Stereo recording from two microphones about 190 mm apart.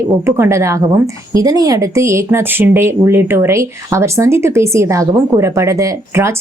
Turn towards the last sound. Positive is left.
turn(degrees=-15)  # may be behind; listen again after turning